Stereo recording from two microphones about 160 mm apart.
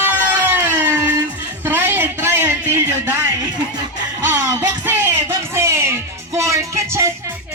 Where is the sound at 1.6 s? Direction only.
10° right (ahead or behind).